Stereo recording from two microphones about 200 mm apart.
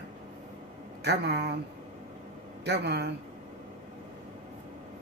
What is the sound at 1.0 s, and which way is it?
Speech, 55° right (ahead or behind).